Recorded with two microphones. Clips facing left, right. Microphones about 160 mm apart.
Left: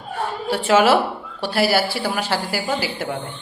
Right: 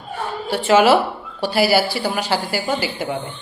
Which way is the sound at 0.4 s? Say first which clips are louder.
Right 2 dB; centre (ahead or behind).